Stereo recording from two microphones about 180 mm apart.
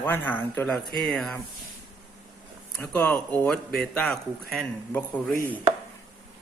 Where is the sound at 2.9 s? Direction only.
10° left (ahead or behind).